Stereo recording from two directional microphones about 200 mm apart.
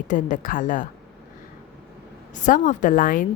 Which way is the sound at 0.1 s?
40° left (ahead or behind).